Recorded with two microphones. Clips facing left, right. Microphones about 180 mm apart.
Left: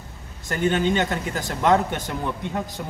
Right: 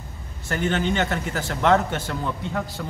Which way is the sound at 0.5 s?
15° left (ahead or behind).